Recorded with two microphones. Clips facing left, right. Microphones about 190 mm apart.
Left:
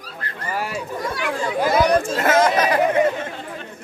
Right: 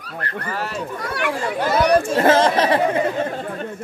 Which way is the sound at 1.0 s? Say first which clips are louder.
Right 1 dB; 65° right (ahead or behind).